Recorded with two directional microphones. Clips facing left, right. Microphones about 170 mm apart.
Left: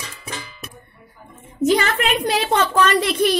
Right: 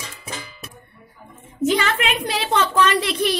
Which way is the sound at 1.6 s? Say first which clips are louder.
Left 2 dB; 40° left (ahead or behind).